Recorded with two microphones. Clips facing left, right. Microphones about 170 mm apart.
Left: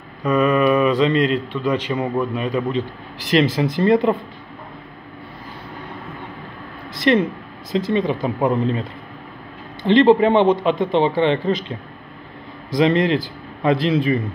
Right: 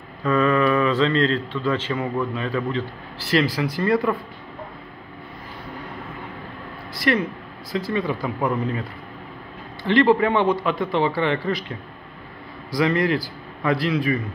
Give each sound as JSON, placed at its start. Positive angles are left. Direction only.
{"t": 0.2, "sound": "a man's voice", "side_deg": 15}
{"t": 7.0, "sound": "a man's voice", "side_deg": 25}
{"t": 9.8, "sound": "a man's voice", "side_deg": 20}
{"t": 12.7, "sound": "a man's voice", "side_deg": 20}